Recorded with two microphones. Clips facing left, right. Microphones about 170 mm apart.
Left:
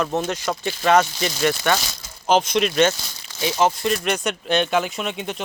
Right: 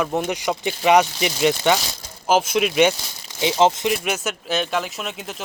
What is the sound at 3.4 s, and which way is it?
Speech, 20° right (ahead or behind).